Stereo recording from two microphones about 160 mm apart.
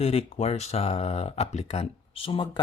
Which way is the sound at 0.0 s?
40° left (ahead or behind).